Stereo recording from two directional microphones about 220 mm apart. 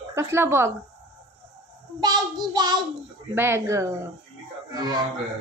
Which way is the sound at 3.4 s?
10° right (ahead or behind).